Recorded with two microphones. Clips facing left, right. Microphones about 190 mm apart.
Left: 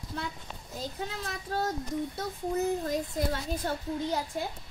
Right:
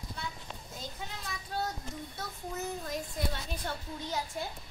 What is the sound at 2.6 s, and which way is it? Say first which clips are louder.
A child's voice: left 8 dB; 40° left (ahead or behind).